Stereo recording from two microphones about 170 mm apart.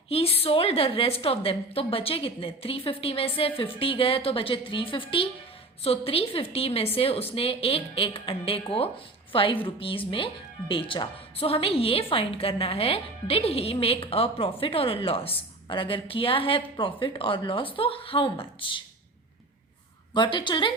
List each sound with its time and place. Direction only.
0.1 s a woman's voice: 35° left (ahead or behind)
20.1 s a woman's voice: 25° left (ahead or behind)